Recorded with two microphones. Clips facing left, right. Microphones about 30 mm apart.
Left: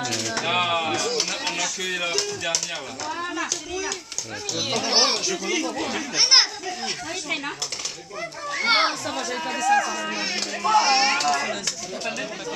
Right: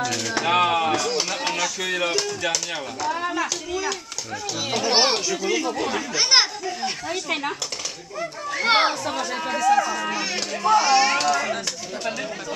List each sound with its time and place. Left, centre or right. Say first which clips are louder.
0.4 s speech: right 4 dB; centre
4.6 s speech: right 1 dB; centre
4.9 s speech: right 2 dB; centre
6.1 s speech: left 1 dB; centre
8.2 s speech: right 1 dB; centre
10.8 s speech: left 1 dB; centre